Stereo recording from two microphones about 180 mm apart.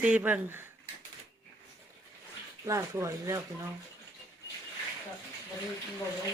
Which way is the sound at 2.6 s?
15° right (ahead or behind).